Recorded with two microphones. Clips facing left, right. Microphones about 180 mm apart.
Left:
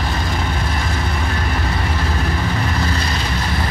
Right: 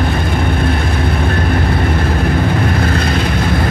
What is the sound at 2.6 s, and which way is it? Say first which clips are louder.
Vehicle: right 6 dB; 55° right (ahead or behind).